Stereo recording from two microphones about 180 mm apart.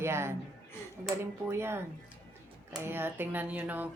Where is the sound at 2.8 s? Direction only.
10° right (ahead or behind).